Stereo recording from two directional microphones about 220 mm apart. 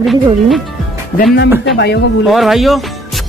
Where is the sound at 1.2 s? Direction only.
45° left (ahead or behind).